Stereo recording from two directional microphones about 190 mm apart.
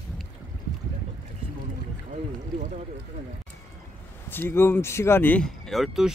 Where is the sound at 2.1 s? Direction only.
40° right (ahead or behind).